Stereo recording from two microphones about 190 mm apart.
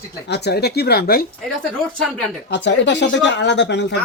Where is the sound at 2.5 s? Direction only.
70° left (ahead or behind).